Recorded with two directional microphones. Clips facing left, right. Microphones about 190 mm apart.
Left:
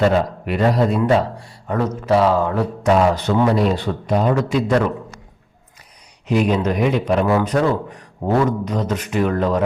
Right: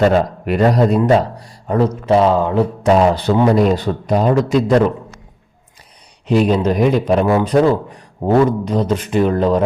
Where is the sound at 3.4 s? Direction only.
45° right (ahead or behind).